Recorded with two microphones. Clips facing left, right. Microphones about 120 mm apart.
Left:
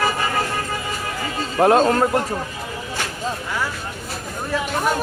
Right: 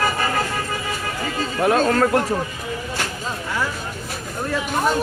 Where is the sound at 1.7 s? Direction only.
25° left (ahead or behind).